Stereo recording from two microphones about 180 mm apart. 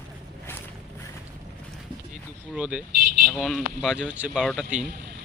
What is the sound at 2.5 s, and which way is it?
Speech, 5° right (ahead or behind).